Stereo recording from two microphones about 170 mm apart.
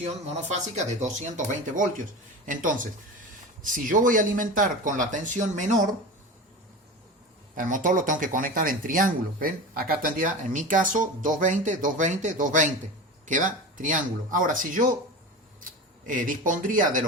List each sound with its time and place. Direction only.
0.0 s speech: 40° right (ahead or behind)
7.5 s speech: 50° right (ahead or behind)
16.0 s speech: 50° right (ahead or behind)